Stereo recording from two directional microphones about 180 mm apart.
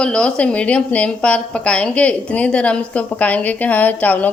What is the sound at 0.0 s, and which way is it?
A woman's voice, 5° left (ahead or behind).